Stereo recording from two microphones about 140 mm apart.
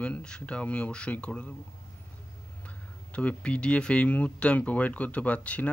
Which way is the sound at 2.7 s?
10° left (ahead or behind).